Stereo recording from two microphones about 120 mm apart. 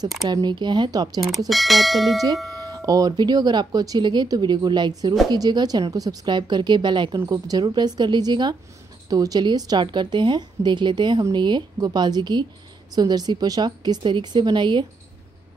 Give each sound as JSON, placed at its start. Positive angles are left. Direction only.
{"t": 0.2, "sound": "a woman's voice", "side_deg": -35}
{"t": 1.5, "sound": "speech", "side_deg": 0}
{"t": 2.6, "sound": "a woman's voice", "side_deg": -30}